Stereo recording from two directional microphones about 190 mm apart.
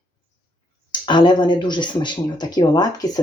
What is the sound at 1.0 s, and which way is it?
Speech, 25° left (ahead or behind).